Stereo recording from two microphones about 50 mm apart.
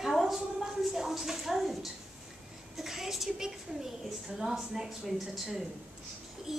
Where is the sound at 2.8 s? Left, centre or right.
Centre.